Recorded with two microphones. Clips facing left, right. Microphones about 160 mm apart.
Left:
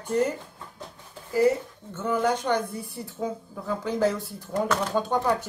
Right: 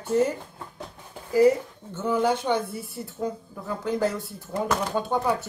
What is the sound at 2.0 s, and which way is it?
Speech, 10° right (ahead or behind).